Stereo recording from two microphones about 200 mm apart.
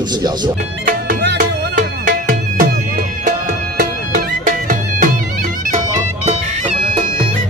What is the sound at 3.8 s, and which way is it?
Music, 40° right (ahead or behind).